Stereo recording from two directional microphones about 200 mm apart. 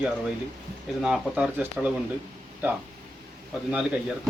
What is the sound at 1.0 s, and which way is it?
Speech, 5° right (ahead or behind).